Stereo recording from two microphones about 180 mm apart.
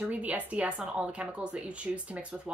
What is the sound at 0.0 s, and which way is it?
A woman's voice, 10° right (ahead or behind).